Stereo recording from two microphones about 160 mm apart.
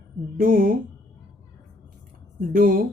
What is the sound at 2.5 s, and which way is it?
Speech, 60° right (ahead or behind).